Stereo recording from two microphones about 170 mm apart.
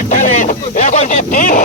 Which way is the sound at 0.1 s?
45° left (ahead or behind).